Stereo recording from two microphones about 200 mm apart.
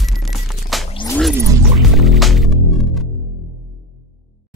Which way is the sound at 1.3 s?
15° right (ahead or behind).